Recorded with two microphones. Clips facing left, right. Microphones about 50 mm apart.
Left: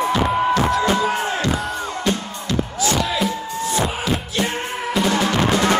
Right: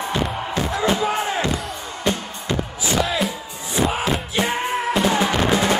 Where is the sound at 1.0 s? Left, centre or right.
Right.